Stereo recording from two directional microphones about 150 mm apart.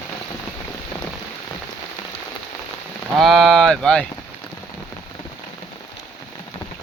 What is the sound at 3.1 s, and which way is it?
Speech, centre (ahead or behind).